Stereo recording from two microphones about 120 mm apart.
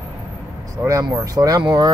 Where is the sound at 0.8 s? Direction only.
30° right (ahead or behind).